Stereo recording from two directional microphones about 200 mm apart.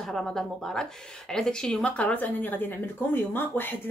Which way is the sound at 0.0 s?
Centre (ahead or behind).